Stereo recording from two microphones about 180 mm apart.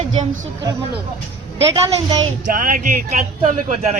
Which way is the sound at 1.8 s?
20° right (ahead or behind).